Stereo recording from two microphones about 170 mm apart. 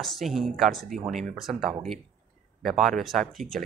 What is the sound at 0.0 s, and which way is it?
Speech, centre (ahead or behind).